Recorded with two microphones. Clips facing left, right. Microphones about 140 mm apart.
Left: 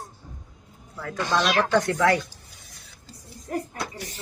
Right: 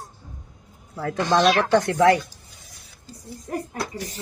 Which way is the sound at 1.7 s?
25° right (ahead or behind).